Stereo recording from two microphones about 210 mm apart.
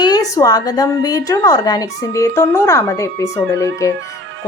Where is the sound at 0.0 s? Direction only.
20° left (ahead or behind).